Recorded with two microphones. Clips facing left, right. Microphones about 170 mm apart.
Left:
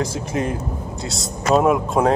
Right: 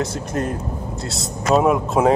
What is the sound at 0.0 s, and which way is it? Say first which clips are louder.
Speech: even; centre (ahead or behind).